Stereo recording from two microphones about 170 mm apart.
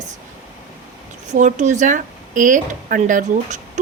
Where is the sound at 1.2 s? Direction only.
45° right (ahead or behind).